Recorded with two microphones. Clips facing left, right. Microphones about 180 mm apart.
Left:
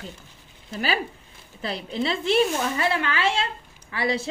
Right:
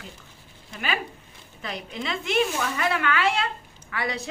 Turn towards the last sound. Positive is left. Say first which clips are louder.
# left 4 dB
turn(degrees=30)  # may be behind; listen again after turning